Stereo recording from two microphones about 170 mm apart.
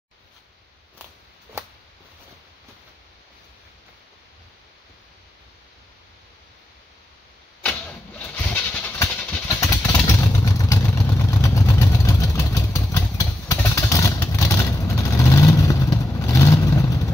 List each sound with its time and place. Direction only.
8.4 s vehicle: 10° left (ahead or behind)